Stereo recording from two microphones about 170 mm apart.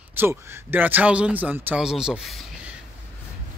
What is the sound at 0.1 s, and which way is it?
Speech, 10° right (ahead or behind).